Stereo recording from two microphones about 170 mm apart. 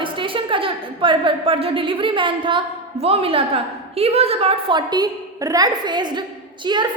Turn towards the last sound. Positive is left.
turn(degrees=-25)  # may be behind; listen again after turning